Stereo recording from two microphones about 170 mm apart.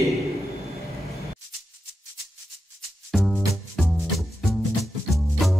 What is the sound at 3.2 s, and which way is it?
Music, 5° left (ahead or behind).